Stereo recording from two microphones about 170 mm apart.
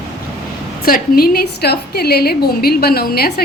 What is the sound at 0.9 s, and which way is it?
A woman's voice, 60° left (ahead or behind).